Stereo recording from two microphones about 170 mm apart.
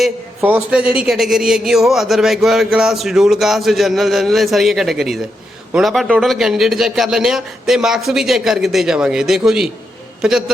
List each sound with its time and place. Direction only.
0.4 s a man's voice: 10° right (ahead or behind)